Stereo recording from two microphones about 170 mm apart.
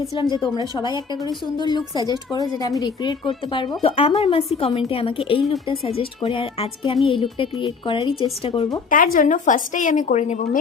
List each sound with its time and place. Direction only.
0.1 s a woman's voice: 25° left (ahead or behind)
8.9 s a woman's voice: 55° left (ahead or behind)